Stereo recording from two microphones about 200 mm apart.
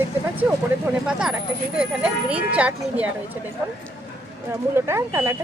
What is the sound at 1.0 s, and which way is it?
Speech, 5° right (ahead or behind).